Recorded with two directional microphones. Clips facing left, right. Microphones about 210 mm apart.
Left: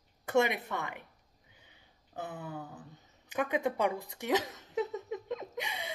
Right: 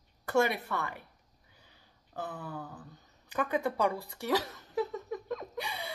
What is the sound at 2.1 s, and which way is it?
Speech, 20° left (ahead or behind).